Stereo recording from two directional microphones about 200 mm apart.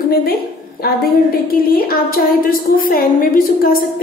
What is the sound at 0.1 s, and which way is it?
A woman's voice, 50° left (ahead or behind).